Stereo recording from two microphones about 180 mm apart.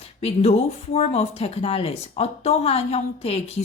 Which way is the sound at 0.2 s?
35° left (ahead or behind).